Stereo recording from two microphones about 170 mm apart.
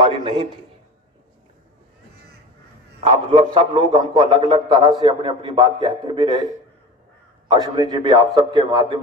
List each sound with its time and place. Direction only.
0.0 s a man's voice: 35° right (ahead or behind)
3.0 s a man's voice: 35° right (ahead or behind)